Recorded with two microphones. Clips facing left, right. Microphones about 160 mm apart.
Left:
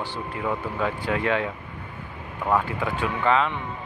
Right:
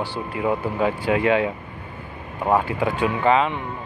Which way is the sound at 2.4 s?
30° right (ahead or behind).